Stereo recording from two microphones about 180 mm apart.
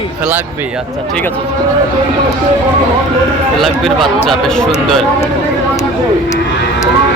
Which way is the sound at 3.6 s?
Centre (ahead or behind).